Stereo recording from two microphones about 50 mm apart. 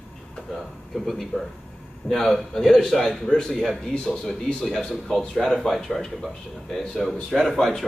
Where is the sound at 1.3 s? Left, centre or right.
Left.